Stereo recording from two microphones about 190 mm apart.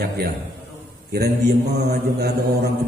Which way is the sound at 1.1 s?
60° right (ahead or behind).